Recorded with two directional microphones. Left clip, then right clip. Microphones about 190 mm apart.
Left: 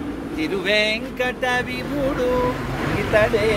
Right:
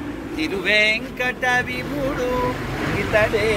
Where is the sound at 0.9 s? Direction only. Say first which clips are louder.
Even; 35° left (ahead or behind).